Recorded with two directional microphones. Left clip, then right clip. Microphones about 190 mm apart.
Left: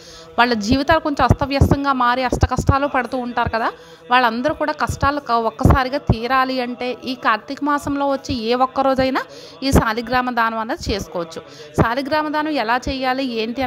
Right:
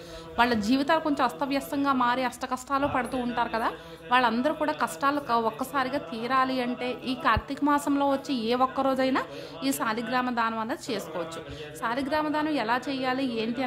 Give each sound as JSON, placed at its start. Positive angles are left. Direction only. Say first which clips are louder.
{"t": 0.4, "sound": "a woman's voice", "louder": "left 8 dB", "side_deg": 40}